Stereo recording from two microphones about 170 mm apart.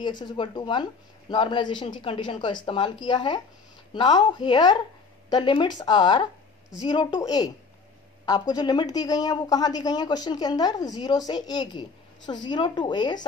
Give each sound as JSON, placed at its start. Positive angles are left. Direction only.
{"t": 0.2, "sound": "a woman's voice", "side_deg": 25}